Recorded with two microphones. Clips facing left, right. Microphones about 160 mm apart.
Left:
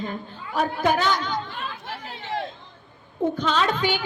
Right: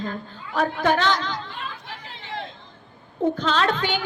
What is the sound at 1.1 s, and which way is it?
Speech, 90° right.